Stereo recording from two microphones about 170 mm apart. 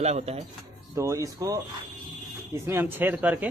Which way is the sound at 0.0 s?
40° right (ahead or behind).